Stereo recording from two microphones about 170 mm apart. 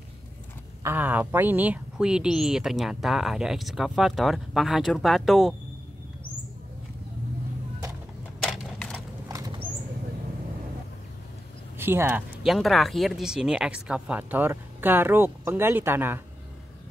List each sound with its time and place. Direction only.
0.8 s a woman's voice: 10° right (ahead or behind)
8.4 s a sound: centre (ahead or behind)
8.9 s horse: 20° right (ahead or behind)
11.8 s speech: 15° right (ahead or behind)
12.4 s speech: centre (ahead or behind)